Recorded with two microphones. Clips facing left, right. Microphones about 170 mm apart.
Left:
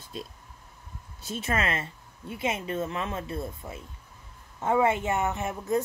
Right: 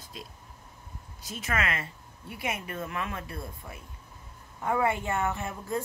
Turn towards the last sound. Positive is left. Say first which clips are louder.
# left 5 dB
turn(degrees=20)  # may be behind; listen again after turning